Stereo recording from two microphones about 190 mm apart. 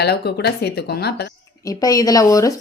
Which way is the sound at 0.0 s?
60° left (ahead or behind).